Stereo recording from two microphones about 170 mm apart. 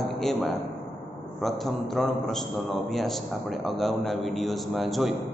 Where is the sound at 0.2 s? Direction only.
Centre (ahead or behind).